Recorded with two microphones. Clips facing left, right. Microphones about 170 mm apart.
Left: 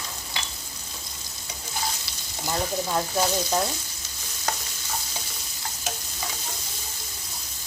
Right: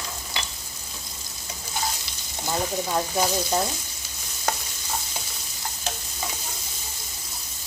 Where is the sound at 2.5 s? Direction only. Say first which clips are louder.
Right 1 dB; 10° right (ahead or behind).